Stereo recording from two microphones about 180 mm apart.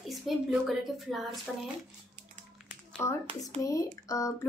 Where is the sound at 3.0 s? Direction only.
15° left (ahead or behind).